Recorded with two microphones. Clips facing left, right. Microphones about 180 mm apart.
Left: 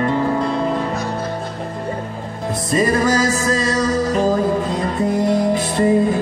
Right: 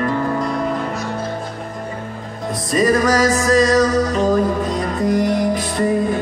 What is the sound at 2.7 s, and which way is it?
Music, 25° left (ahead or behind).